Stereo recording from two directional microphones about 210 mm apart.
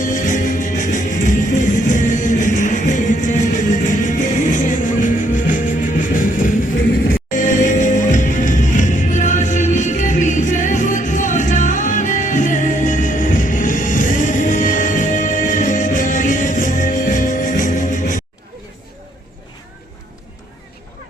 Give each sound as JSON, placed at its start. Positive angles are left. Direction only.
{"t": 0.0, "sound": "music", "side_deg": 40}